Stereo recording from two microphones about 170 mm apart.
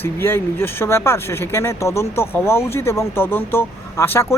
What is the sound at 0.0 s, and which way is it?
Speech, 15° left (ahead or behind).